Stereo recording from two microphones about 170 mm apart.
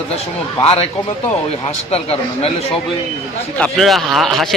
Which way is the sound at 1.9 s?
35° left (ahead or behind).